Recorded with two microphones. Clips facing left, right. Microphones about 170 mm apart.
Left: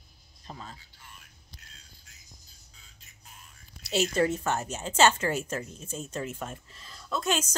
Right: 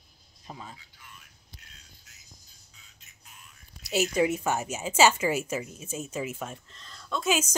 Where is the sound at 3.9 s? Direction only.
10° right (ahead or behind).